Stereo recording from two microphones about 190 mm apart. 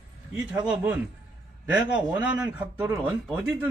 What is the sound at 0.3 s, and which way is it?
Speech, 20° right (ahead or behind).